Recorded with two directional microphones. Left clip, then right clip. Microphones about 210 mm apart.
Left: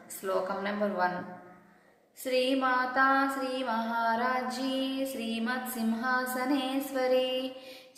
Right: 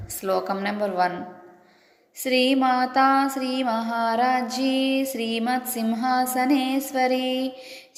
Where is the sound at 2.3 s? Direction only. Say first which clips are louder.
Right 7 dB; 35° right (ahead or behind).